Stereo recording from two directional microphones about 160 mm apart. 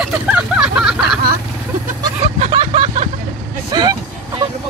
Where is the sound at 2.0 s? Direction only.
35° right (ahead or behind).